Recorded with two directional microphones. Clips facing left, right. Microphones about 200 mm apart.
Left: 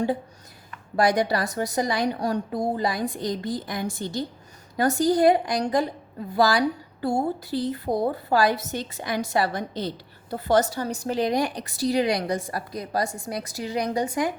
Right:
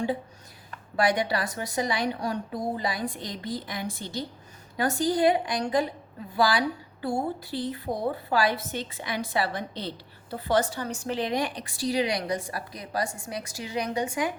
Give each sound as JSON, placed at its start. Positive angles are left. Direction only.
{"t": 0.9, "sound": "a woman's voice", "side_deg": 40}